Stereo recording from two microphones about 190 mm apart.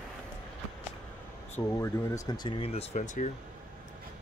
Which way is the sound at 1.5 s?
15° left (ahead or behind).